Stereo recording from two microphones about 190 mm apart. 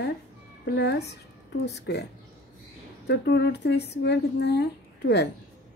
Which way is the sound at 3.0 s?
60° left (ahead or behind).